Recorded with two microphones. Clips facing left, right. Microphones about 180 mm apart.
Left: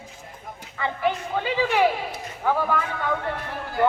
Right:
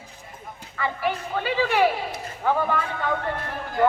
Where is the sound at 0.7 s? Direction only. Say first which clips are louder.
Left 1 dB; 20° left (ahead or behind).